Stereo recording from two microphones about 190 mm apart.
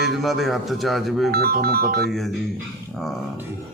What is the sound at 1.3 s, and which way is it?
Music, 55° right (ahead or behind).